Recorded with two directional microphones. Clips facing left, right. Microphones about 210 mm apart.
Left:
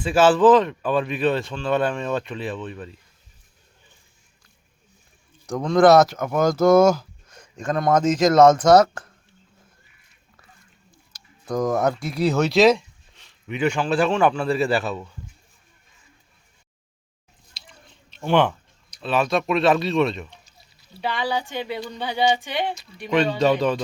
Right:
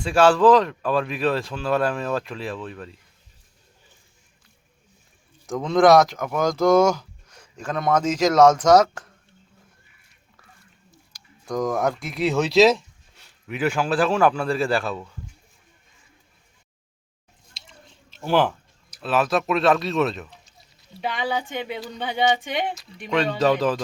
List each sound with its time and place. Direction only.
0.0 s speech: 5° left (ahead or behind)
5.5 s speech: centre (ahead or behind)
11.4 s speech: centre (ahead or behind)
18.1 s a sound: 5° right (ahead or behind)
21.0 s speech: 20° right (ahead or behind)
22.3 s speech: centre (ahead or behind)